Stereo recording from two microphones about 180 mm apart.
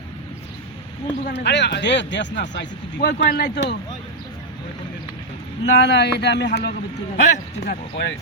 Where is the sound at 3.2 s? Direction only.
55° left (ahead or behind).